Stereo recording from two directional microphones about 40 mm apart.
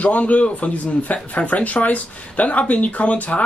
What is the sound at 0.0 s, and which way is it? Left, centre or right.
Speech, left.